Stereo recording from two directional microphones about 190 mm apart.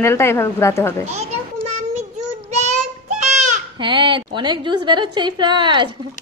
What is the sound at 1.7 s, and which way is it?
Child singing, 35° right (ahead or behind).